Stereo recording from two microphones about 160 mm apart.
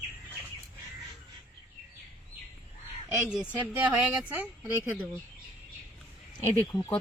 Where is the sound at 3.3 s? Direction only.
5° right (ahead or behind).